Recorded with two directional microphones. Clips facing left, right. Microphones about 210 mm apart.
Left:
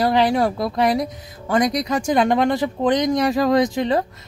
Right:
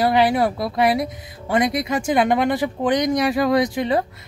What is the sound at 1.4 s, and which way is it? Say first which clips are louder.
Speech: left 1 dB; 25° right (ahead or behind).